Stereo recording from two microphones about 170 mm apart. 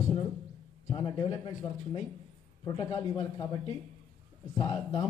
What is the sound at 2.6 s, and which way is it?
A man's voice, 20° left (ahead or behind).